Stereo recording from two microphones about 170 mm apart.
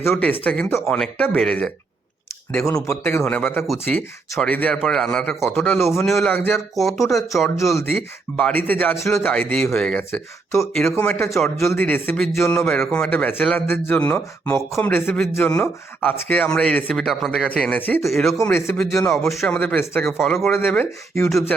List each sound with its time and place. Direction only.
0.0 s speech: centre (ahead or behind)
2.9 s speech: 15° left (ahead or behind)
6.1 s speech: centre (ahead or behind)
6.3 s speech: 10° left (ahead or behind)
6.7 s speech: centre (ahead or behind)
12.2 s speech: centre (ahead or behind)
18.1 s speech: centre (ahead or behind)
18.4 s speech: 10° left (ahead or behind)
20.1 s speech: centre (ahead or behind)
20.5 s speech: 10° left (ahead or behind)